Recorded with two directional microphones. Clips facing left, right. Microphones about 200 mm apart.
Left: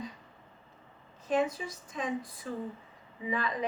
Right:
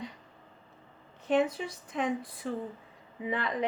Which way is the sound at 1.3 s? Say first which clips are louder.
Right 2 dB; 65° right (ahead or behind).